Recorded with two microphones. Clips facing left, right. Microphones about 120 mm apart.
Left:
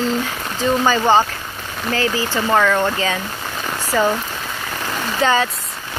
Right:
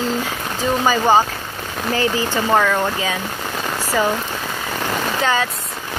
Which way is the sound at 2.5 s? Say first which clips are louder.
Left 1 dB; 5° right (ahead or behind).